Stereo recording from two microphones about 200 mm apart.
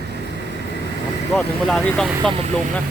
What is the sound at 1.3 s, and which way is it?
Speech, 5° left (ahead or behind).